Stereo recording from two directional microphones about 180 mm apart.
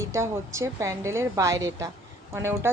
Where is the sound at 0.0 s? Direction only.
15° right (ahead or behind).